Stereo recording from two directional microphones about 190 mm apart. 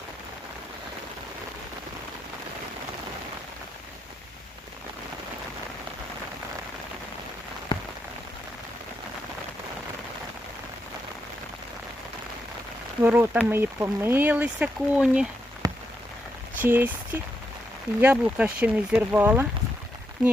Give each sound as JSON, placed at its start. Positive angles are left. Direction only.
{"t": 7.7, "sound": "rain on surface", "side_deg": 25}
{"t": 13.0, "sound": "speech", "side_deg": -10}
{"t": 15.6, "sound": "rain on surface", "side_deg": -15}
{"t": 16.6, "sound": "speech", "side_deg": -10}